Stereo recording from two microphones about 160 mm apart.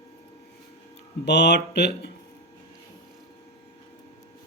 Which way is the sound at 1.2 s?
90° left.